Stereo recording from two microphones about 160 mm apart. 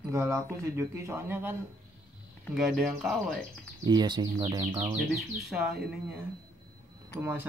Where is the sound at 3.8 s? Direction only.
25° right (ahead or behind).